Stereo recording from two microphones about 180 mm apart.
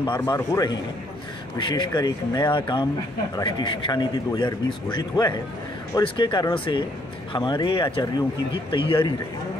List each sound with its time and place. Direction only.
0.3 s speech: 25° left (ahead or behind)